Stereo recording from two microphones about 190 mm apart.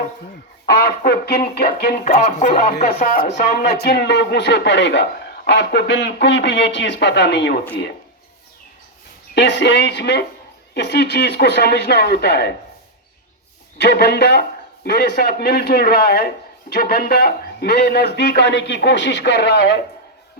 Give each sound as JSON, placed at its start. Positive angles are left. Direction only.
{"t": 0.6, "sound": "speech", "side_deg": 50}
{"t": 1.8, "sound": "music", "side_deg": 45}
{"t": 2.8, "sound": "a man's voice", "side_deg": 45}
{"t": 9.3, "sound": "a man's voice", "side_deg": 65}
{"t": 13.7, "sound": "a man's voice", "side_deg": 55}